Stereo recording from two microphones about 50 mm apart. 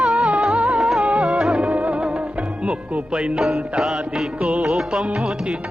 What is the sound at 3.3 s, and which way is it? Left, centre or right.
Music, centre.